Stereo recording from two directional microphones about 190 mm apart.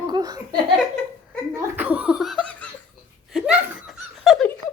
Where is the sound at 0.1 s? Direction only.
20° right (ahead or behind).